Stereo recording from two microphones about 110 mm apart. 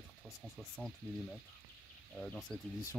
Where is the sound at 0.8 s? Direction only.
5° right (ahead or behind).